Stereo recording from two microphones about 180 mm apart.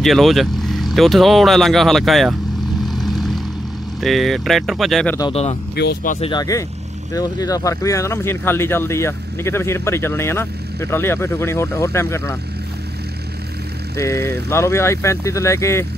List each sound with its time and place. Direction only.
0.0 s speech: centre (ahead or behind)
2.8 s vehicle: centre (ahead or behind)
4.0 s speech: centre (ahead or behind)
5.3 s speech: 35° left (ahead or behind)
7.2 s speech: 20° left (ahead or behind)
13.9 s speech: 15° left (ahead or behind)